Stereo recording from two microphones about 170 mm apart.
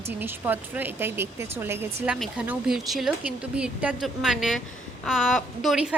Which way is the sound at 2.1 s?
Centre (ahead or behind).